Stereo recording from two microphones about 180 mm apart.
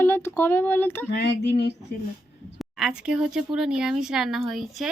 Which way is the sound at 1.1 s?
65° left (ahead or behind).